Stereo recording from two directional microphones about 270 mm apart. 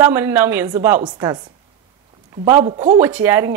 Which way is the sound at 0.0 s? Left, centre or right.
Centre.